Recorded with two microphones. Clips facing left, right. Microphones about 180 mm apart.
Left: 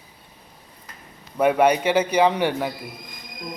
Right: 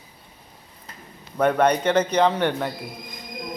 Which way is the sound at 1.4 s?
10° left (ahead or behind).